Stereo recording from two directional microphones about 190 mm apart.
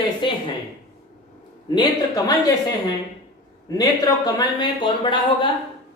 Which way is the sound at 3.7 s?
20° left (ahead or behind).